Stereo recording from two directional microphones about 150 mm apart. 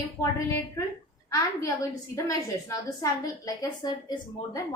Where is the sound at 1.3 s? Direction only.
20° left (ahead or behind).